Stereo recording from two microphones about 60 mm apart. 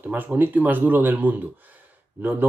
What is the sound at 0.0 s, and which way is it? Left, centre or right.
Speech, right.